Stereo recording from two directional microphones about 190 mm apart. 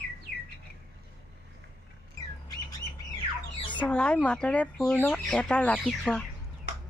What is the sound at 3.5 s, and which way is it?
Squawk, 25° left (ahead or behind).